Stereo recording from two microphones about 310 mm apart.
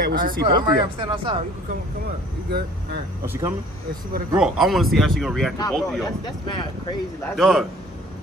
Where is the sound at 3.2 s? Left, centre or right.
Centre.